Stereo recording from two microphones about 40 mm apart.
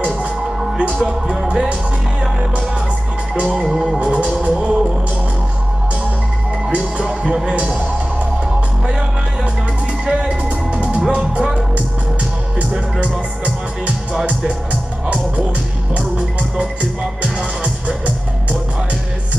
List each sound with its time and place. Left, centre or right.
1.3 s music: centre
3.3 s music: right
6.7 s music: right
7.5 s a man's voice: right
10.1 s music: right